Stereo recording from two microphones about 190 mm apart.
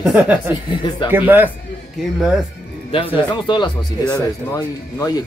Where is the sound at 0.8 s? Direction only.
25° left (ahead or behind).